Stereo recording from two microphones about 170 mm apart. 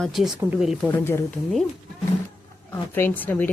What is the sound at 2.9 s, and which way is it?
Speech, 15° left (ahead or behind).